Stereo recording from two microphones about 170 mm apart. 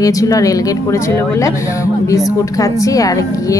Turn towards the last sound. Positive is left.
turn(degrees=20)  # may be behind; listen again after turning